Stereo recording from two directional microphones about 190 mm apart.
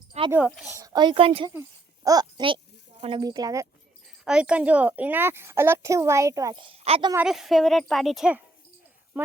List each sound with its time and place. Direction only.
0.3 s speech: 5° right (ahead or behind)
0.8 s a woman's voice: 20° right (ahead or behind)
4.2 s a woman's voice: 5° right (ahead or behind); by 7.1 s 30° right (ahead or behind)
7.3 s speech: centre (ahead or behind)